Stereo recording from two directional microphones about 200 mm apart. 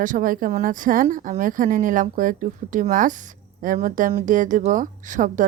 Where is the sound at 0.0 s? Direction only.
40° right (ahead or behind).